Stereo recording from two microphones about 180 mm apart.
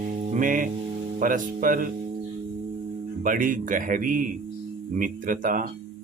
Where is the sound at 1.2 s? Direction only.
50° right (ahead or behind).